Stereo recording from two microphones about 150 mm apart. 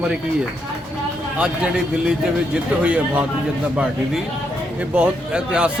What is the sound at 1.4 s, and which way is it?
Speech, 5° right (ahead or behind).